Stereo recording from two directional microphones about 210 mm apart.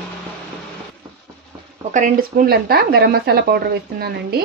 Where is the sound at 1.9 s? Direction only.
40° right (ahead or behind).